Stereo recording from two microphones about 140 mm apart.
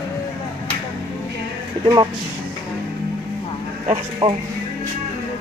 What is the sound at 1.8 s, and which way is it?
Speech, 30° right (ahead or behind).